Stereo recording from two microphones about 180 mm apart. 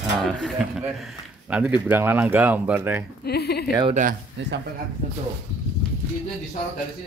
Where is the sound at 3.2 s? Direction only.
65° left (ahead or behind).